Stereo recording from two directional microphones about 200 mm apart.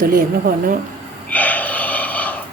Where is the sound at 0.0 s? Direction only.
45° right (ahead or behind).